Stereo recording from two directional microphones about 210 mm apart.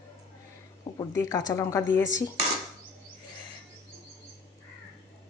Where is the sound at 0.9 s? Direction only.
15° left (ahead or behind).